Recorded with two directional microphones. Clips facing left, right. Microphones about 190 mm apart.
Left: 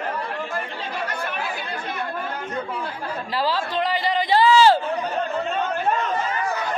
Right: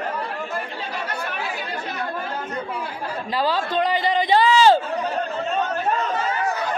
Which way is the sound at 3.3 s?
20° right (ahead or behind).